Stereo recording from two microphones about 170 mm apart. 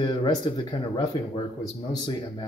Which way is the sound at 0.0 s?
25° left (ahead or behind).